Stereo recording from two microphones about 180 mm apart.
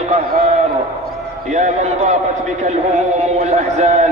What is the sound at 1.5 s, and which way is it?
Speech, 40° right (ahead or behind).